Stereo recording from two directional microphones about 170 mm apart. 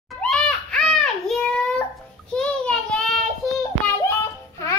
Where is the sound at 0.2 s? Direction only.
5° left (ahead or behind).